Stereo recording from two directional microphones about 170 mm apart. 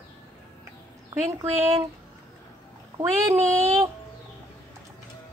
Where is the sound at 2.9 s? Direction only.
15° right (ahead or behind).